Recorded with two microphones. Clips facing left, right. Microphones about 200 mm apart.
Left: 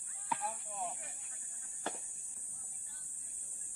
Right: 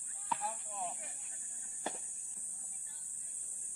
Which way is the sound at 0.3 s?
Centre (ahead or behind).